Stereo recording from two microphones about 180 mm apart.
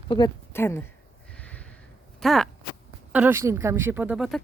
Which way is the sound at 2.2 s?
Centre (ahead or behind).